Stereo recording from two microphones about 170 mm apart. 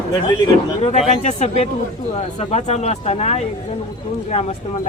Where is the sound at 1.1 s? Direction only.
45° left (ahead or behind).